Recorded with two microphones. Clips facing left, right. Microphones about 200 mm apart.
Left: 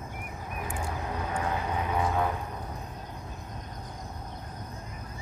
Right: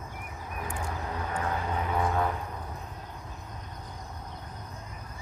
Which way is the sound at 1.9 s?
5° left (ahead or behind).